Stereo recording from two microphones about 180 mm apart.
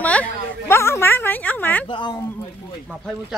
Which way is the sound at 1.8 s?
25° left (ahead or behind).